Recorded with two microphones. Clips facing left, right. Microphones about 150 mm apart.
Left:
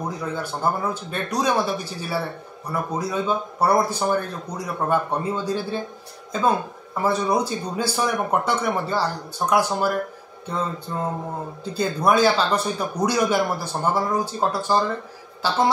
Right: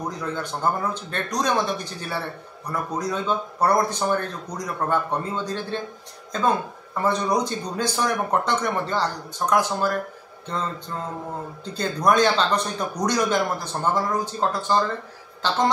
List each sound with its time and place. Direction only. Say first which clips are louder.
0.2 s speech: even; 10° left (ahead or behind)